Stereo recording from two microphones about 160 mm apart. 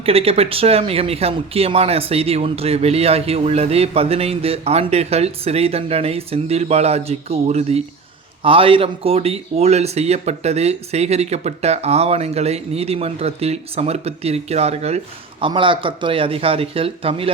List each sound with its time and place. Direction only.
0.0 s speech: 40° right (ahead or behind)